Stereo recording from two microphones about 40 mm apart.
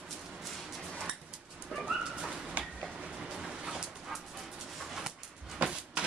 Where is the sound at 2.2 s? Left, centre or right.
Centre.